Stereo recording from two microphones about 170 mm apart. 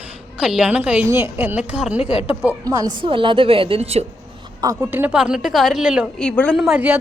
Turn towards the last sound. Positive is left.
turn(degrees=-10)  # may be behind; listen again after turning